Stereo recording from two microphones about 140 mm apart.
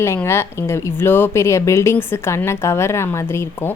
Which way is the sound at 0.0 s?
20° left (ahead or behind).